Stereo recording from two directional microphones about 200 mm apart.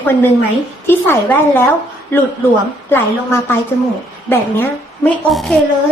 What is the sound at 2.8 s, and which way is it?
A woman's voice, 10° left (ahead or behind).